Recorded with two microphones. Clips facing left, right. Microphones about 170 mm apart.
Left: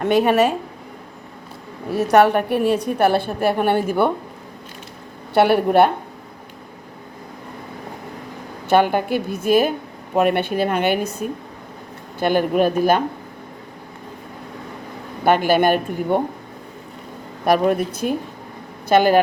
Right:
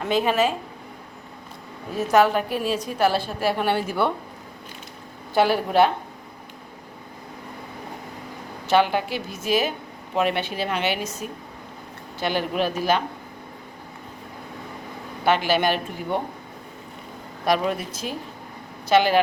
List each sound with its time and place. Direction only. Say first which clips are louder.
0.0 s a woman's voice: left 5 dB; 60° left (ahead or behind)
1.9 s a woman's voice: left 4 dB; 70° left (ahead or behind); by 4.1 s 50° left (ahead or behind)
5.3 s a woman's voice: left 5 dB; 65° left (ahead or behind)
8.7 s a woman's voice: left 4 dB; 50° left (ahead or behind)
15.2 s a woman's voice: left 5 dB; 50° left (ahead or behind)
17.4 s a woman's voice: left 6 dB; 50° left (ahead or behind)